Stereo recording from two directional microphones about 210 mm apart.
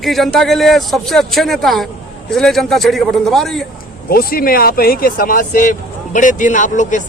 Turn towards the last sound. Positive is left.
turn(degrees=35)  # may be behind; listen again after turning